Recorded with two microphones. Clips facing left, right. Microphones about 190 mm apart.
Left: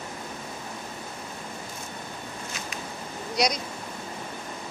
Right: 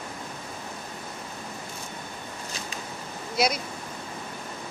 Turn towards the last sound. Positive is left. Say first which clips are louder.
# even
turn(degrees=-5)  # may be behind; listen again after turning